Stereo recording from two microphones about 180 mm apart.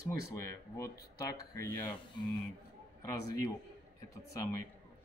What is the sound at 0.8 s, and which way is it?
Speech, 15° left (ahead or behind).